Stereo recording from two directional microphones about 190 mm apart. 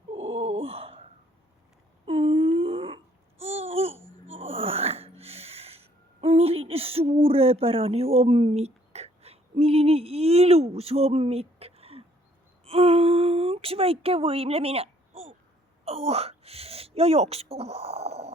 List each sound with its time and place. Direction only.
0.6 s gasp: 30° right (ahead or behind)
2.0 s babbling: 30° right (ahead or behind)
4.3 s a sound: 30° right (ahead or behind)
6.1 s speech: 30° right (ahead or behind)
15.8 s wail: 30° right (ahead or behind)